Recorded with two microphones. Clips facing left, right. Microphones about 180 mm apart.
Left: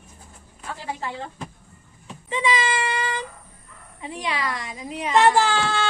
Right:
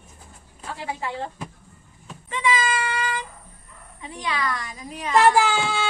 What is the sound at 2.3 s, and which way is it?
A child's voice, 20° left (ahead or behind).